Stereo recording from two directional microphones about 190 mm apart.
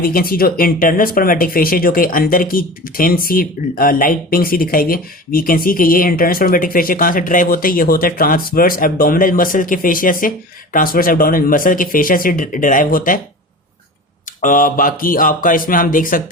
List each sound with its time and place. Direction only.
0.0 s speech: 50° left (ahead or behind)
14.4 s speech: 45° left (ahead or behind)